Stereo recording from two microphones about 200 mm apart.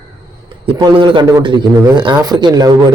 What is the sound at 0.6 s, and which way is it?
Speech, 25° right (ahead or behind).